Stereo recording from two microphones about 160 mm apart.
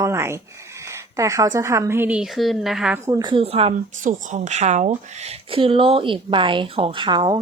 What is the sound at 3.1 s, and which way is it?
A woman's voice, 25° right (ahead or behind).